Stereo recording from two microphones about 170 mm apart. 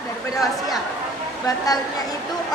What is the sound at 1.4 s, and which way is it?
Speech, 20° left (ahead or behind).